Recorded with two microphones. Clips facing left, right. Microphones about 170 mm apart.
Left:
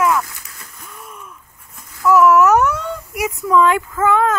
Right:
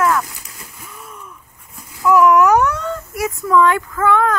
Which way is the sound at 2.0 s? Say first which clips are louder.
Even; centre (ahead or behind).